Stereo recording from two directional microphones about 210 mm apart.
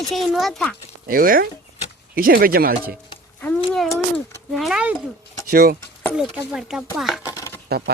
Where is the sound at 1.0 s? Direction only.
45° right (ahead or behind).